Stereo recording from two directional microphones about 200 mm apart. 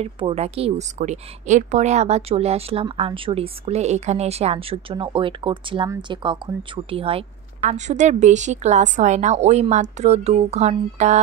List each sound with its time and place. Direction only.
0.0 s speech: 30° right (ahead or behind)